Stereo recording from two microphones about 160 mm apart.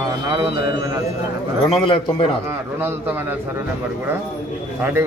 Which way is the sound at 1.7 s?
35° left (ahead or behind).